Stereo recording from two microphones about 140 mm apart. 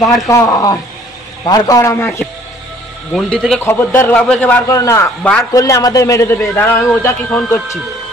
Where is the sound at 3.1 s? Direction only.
Centre (ahead or behind).